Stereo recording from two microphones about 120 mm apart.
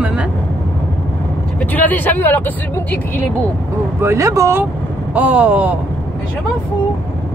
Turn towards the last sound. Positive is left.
turn(degrees=-10)  # may be behind; listen again after turning